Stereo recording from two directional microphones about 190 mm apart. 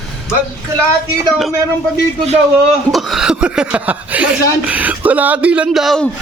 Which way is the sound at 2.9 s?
Centre (ahead or behind).